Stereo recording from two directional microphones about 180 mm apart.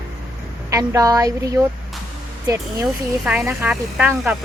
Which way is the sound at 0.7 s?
20° right (ahead or behind).